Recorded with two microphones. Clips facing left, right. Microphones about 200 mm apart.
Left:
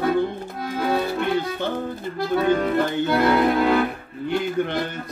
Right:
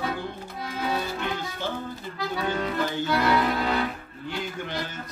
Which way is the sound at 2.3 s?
55° left (ahead or behind).